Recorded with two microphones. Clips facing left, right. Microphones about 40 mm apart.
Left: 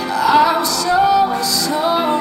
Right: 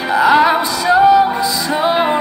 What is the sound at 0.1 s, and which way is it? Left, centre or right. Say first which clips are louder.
Music: right 2 dB; right.